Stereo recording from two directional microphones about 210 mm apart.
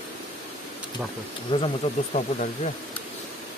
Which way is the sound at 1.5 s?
30° left (ahead or behind).